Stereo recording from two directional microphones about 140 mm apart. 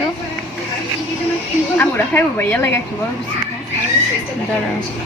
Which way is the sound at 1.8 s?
15° left (ahead or behind).